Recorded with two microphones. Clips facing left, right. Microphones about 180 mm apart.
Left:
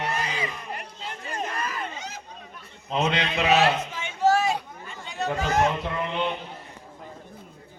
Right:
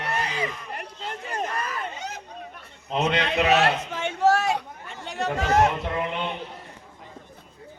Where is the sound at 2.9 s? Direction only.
55° right (ahead or behind); by 5.5 s 75° right (ahead or behind).